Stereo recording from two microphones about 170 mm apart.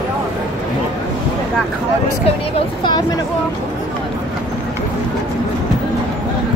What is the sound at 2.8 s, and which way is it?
Speech, 25° left (ahead or behind).